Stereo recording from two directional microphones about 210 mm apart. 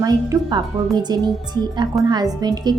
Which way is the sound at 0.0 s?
20° right (ahead or behind).